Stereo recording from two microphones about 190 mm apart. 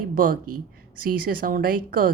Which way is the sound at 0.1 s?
45° right (ahead or behind).